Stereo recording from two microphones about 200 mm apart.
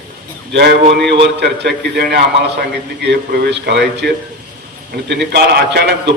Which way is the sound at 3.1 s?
55° right (ahead or behind).